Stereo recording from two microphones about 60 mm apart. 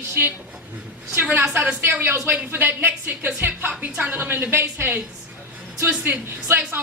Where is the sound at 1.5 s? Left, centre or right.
Right.